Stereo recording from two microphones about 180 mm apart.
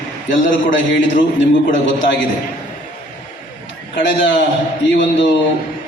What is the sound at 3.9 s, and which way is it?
Speech, 80° left.